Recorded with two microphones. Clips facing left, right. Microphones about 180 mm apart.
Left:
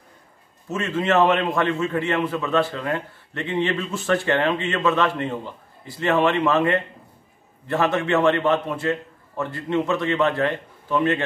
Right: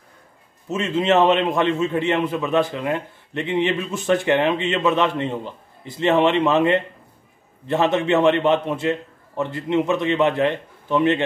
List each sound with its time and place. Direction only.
0.7 s a man's voice: 20° right (ahead or behind)